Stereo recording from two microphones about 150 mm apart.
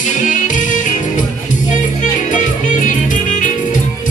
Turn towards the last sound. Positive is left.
turn(degrees=55)  # may be behind; listen again after turning